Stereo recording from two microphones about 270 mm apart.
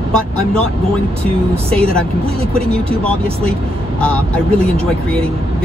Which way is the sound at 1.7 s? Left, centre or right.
Centre.